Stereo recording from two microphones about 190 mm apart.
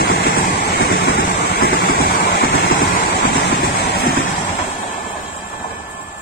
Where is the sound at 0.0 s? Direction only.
55° left (ahead or behind).